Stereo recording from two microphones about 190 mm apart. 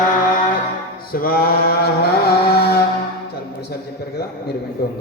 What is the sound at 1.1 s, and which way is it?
Mantra, 50° left (ahead or behind).